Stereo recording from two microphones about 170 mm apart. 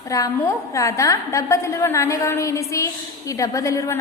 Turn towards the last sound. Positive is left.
turn(degrees=20)  # may be behind; listen again after turning